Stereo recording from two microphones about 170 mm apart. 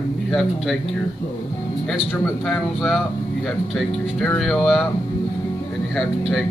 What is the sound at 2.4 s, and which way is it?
Speech, centre (ahead or behind).